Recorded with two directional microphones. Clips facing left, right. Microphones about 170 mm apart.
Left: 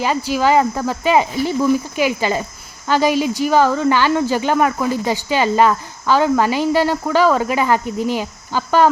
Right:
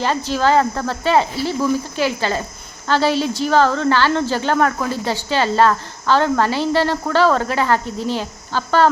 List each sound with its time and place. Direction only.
0.0 s speech: 10° left (ahead or behind)